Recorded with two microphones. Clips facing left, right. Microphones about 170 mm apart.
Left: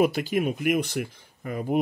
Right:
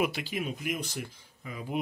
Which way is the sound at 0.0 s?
45° left (ahead or behind).